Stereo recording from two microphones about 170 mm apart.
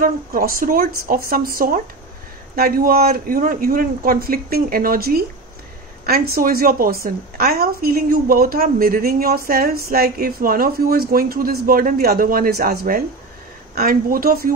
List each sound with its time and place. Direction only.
0.0 s speech: 55° right (ahead or behind)